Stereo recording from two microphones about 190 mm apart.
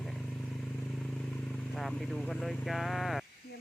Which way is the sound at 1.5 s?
Centre (ahead or behind).